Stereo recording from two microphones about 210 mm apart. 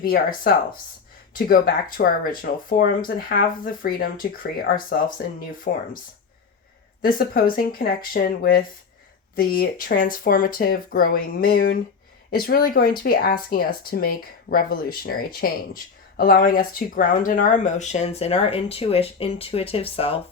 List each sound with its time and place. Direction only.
0.0 s speech: 45° left (ahead or behind)
7.0 s speech: 45° left (ahead or behind); by 20.1 s 25° left (ahead or behind)